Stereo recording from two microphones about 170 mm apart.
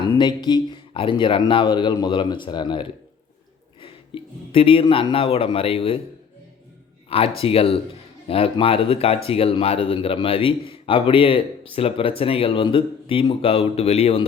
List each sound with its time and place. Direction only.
0.0 s a man's voice: 25° left (ahead or behind)
7.1 s speech: 35° left (ahead or behind)